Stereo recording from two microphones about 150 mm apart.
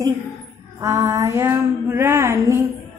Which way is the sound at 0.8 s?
20° right (ahead or behind).